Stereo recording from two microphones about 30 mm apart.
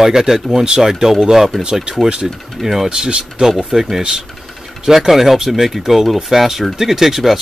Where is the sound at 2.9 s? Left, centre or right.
Right.